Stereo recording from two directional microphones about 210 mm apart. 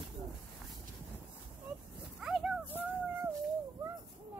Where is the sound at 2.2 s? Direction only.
Centre (ahead or behind).